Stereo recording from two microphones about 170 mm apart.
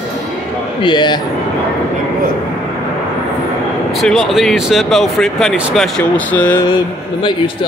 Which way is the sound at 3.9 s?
Centre (ahead or behind).